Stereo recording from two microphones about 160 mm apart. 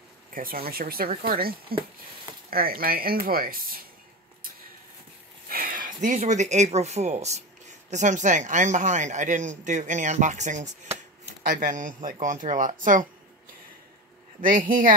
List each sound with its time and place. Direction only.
0.3 s speech: 60° right (ahead or behind)
5.5 s speech: 60° right (ahead or behind)
14.4 s speech: 60° right (ahead or behind)